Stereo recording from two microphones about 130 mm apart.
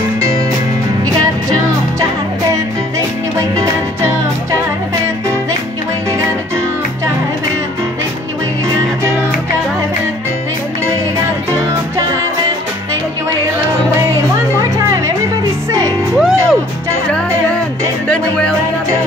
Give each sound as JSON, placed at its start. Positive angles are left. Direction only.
{"t": 3.3, "sound": "music", "side_deg": -25}
{"t": 16.2, "sound": "music", "side_deg": 0}
{"t": 18.0, "sound": "music", "side_deg": 5}